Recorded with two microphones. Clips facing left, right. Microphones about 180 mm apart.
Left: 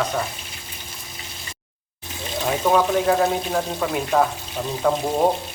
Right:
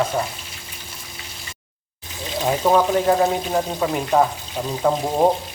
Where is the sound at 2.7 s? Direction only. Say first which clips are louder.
Right 1 dB; 10° right (ahead or behind).